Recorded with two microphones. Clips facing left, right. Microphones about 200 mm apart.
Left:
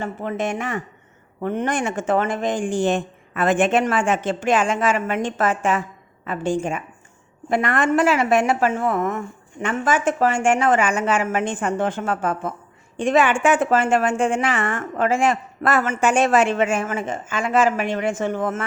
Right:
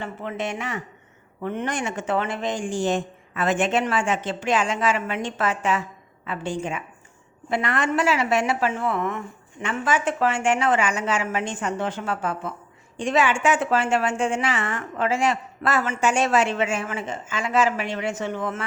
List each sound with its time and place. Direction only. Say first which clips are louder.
0.0 s a woman's voice: left 4 dB; 45° left (ahead or behind)